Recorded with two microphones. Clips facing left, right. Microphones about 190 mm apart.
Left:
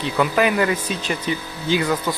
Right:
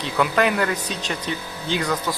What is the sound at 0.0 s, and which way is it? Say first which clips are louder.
Speech: left 2 dB; centre (ahead or behind).